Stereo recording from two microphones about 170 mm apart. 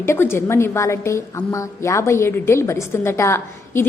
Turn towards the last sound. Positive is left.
turn(degrees=15)  # may be behind; listen again after turning